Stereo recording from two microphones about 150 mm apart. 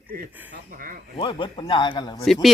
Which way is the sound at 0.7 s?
70° right (ahead or behind).